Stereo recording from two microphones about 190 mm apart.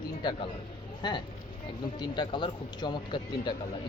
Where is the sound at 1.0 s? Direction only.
25° left (ahead or behind).